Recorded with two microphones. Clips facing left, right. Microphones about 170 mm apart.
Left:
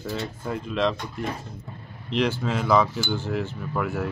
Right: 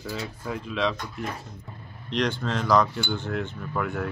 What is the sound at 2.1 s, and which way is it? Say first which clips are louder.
Cutlery: left 2 dB; 5° left (ahead or behind).